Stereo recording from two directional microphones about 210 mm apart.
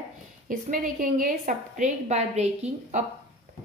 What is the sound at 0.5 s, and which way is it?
A woman's voice, 40° right (ahead or behind).